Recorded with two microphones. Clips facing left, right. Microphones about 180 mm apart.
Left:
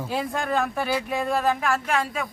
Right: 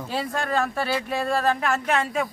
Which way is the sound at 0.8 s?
15° left (ahead or behind).